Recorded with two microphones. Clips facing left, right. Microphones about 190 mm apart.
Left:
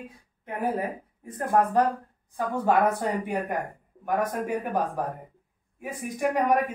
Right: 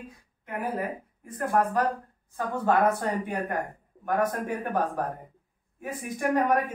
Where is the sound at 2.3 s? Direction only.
15° left (ahead or behind).